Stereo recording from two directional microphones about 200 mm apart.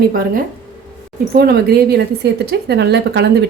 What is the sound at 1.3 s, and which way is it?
A woman's voice, 50° right (ahead or behind).